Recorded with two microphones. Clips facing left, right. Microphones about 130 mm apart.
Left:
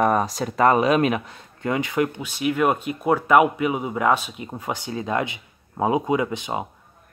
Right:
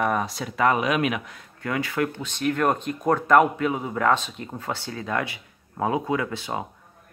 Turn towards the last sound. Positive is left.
turn(degrees=20)  # may be behind; listen again after turning